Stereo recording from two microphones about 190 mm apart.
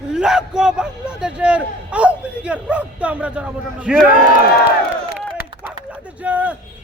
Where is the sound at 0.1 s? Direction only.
5° right (ahead or behind).